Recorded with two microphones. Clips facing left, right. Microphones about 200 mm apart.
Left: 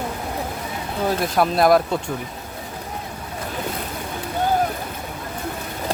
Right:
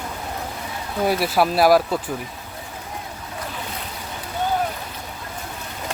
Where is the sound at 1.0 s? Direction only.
5° right (ahead or behind).